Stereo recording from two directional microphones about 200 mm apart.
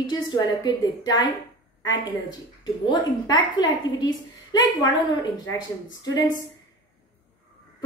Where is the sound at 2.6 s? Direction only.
20° left (ahead or behind).